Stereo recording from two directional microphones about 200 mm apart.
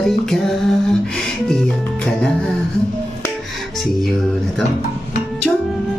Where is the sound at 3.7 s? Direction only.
Centre (ahead or behind).